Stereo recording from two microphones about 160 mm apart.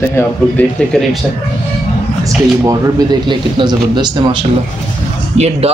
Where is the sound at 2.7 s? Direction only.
25° right (ahead or behind).